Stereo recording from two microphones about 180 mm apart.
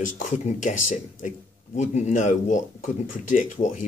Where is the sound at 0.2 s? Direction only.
45° left (ahead or behind).